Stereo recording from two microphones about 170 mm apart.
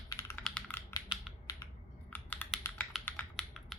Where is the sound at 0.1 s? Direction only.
20° left (ahead or behind).